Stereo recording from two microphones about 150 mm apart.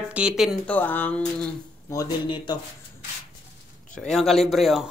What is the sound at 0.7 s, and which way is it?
Speech, 10° left (ahead or behind).